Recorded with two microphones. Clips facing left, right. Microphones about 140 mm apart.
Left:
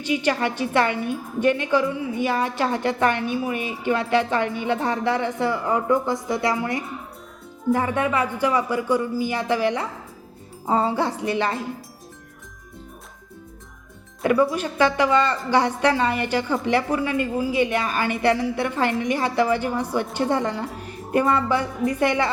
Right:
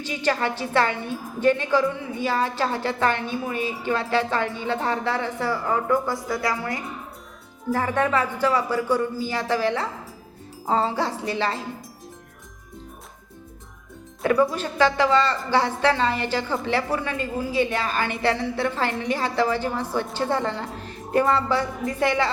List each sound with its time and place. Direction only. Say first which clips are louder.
0.0 s a woman's voice: left 2 dB; 15° left (ahead or behind)
14.5 s a woman's voice: left 1 dB; 15° left (ahead or behind)
21.9 s a woman's voice: even; 15° left (ahead or behind)